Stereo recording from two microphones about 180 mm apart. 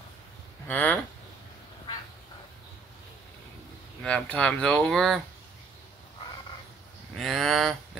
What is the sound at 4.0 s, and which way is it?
Speech, 5° left (ahead or behind).